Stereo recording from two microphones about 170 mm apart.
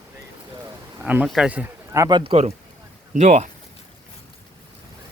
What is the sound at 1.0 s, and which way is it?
Speech, 10° right (ahead or behind).